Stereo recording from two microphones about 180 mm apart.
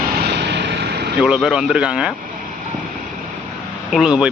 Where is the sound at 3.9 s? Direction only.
5° right (ahead or behind).